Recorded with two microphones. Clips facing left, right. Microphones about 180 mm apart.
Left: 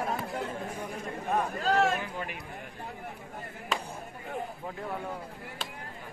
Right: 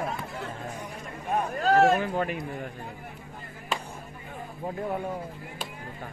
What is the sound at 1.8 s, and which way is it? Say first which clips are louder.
Speech: right 6 dB; 45° right (ahead or behind).